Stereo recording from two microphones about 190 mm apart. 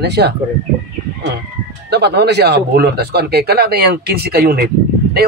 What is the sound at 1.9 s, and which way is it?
Speech, 60° right (ahead or behind).